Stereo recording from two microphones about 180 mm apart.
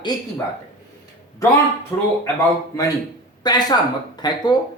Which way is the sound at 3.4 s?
25° left (ahead or behind).